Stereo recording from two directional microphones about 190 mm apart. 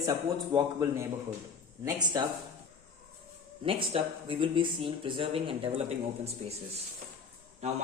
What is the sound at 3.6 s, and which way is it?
Speech, 30° right (ahead or behind).